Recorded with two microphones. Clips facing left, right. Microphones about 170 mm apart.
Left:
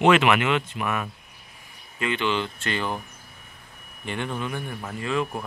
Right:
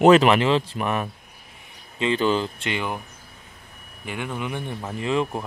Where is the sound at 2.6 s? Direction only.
15° right (ahead or behind).